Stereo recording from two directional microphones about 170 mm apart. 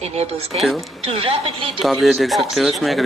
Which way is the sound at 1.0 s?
35° right (ahead or behind).